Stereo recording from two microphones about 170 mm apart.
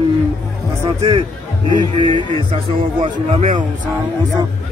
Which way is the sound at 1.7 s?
25° right (ahead or behind).